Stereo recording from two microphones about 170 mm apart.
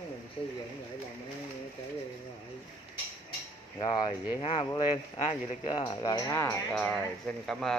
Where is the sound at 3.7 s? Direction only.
30° left (ahead or behind).